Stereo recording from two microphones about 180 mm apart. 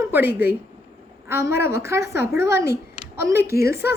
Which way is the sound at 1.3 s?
15° right (ahead or behind).